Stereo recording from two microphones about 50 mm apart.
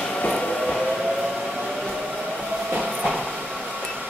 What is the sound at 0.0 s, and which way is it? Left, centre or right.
Train, centre.